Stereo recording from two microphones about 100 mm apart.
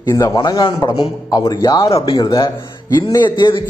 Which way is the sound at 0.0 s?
35° left (ahead or behind).